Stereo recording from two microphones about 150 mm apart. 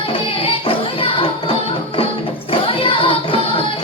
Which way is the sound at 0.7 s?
35° left (ahead or behind).